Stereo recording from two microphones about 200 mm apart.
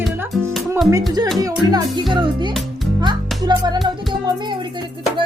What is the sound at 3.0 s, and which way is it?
Music, 20° right (ahead or behind).